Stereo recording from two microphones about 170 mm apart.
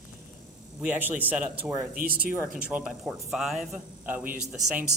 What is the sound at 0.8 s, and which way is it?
Speech, 10° right (ahead or behind).